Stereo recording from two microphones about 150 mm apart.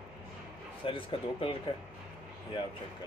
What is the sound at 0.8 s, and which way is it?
Speech, 35° left (ahead or behind).